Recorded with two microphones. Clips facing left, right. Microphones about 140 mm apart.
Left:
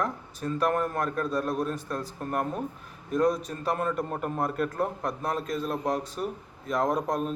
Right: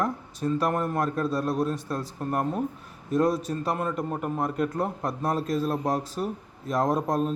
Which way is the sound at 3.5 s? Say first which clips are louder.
Right 6 dB; 30° right (ahead or behind).